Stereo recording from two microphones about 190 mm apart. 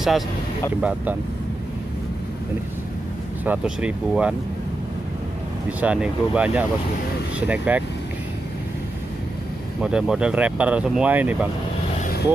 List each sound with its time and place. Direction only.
0.7 s speech: 5° right (ahead or behind)
3.4 s speech: 5° right (ahead or behind)
5.7 s speech: 5° right (ahead or behind)
9.8 s speech: 5° right (ahead or behind)
12.0 s vehicle: 50° left (ahead or behind)